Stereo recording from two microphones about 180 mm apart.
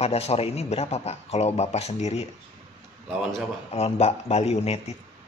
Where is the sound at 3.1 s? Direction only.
5° right (ahead or behind).